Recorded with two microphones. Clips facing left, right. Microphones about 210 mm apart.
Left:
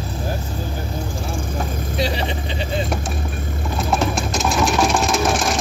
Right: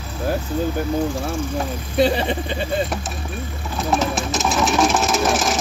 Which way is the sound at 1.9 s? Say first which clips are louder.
Right 6 dB; 50° right (ahead or behind).